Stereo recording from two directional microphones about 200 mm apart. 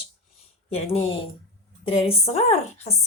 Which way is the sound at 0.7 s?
30° left (ahead or behind).